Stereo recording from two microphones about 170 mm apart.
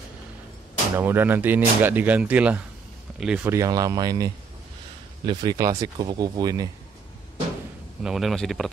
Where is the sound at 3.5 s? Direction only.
20° right (ahead or behind).